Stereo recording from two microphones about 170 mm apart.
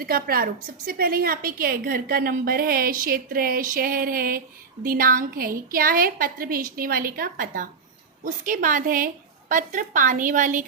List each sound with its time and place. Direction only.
0.0 s a woman's voice: 60° right (ahead or behind)